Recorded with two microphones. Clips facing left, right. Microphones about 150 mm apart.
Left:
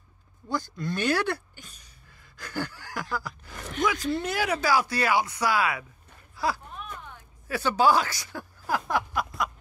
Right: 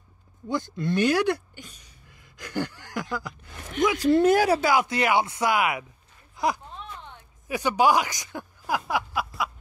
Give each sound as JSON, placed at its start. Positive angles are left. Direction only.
{"t": 0.5, "sound": "speech", "side_deg": -20}
{"t": 2.3, "sound": "a sound", "side_deg": -20}
{"t": 3.8, "sound": "speech", "side_deg": -25}
{"t": 4.1, "sound": "speech", "side_deg": -45}
{"t": 4.6, "sound": "speech", "side_deg": -20}
{"t": 6.3, "sound": "a sound", "side_deg": -20}